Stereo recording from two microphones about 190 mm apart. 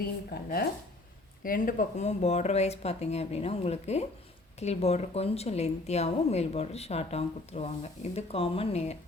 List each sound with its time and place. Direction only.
0.3 s a woman's voice: 55° left (ahead or behind); by 9.0 s 35° left (ahead or behind)